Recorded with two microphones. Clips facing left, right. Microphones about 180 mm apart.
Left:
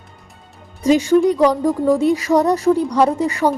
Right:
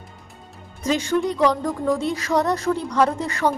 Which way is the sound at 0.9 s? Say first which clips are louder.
Left 8 dB; 15° left (ahead or behind).